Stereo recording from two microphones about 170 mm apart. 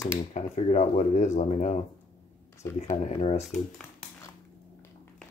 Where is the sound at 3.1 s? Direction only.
40° left (ahead or behind).